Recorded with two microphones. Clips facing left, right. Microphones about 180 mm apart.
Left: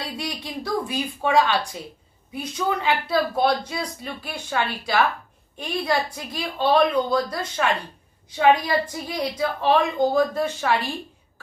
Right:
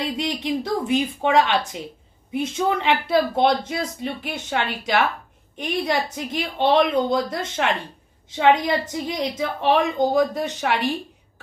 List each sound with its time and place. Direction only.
0.0 s speech: 20° right (ahead or behind)